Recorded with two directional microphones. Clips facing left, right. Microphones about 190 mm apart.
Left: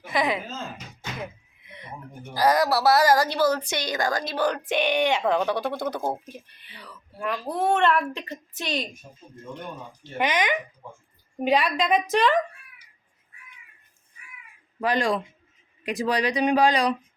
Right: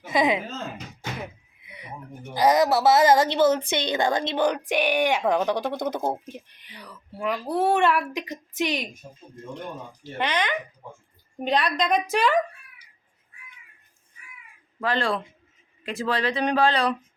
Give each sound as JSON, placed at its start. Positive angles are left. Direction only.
{"t": 0.0, "sound": "speech", "side_deg": -20}
{"t": 1.6, "sound": "a sound", "side_deg": -10}
{"t": 2.3, "sound": "speech", "side_deg": -20}
{"t": 10.2, "sound": "a woman's voice", "side_deg": 15}
{"t": 14.8, "sound": "speech", "side_deg": 15}